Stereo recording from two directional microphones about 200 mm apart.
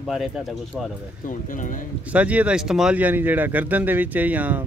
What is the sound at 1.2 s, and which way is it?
Speech, 40° left (ahead or behind).